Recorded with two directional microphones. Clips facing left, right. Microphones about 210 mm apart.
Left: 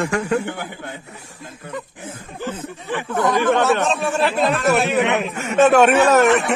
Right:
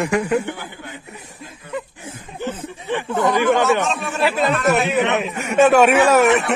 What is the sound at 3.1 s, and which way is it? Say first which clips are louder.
Speech: even; 15° right (ahead or behind).